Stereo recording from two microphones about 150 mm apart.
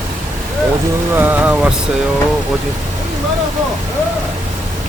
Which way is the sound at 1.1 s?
15° right (ahead or behind).